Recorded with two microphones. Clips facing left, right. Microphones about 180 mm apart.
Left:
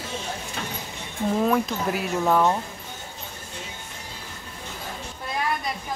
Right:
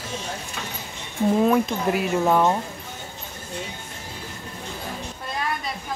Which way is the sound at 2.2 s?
10° right (ahead or behind).